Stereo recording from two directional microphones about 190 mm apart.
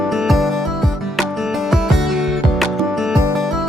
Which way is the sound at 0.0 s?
Centre (ahead or behind).